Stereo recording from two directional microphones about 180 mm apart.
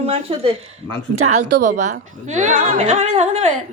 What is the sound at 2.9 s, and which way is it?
Speech, 35° right (ahead or behind).